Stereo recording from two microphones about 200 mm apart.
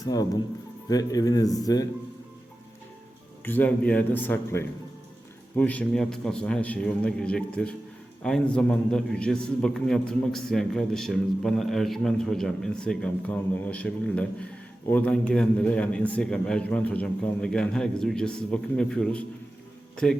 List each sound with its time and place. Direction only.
0.0 s speech: 20° left (ahead or behind)
3.4 s a man's voice: 10° left (ahead or behind)